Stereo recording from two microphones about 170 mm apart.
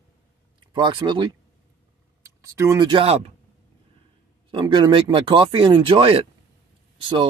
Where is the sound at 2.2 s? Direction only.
15° right (ahead or behind).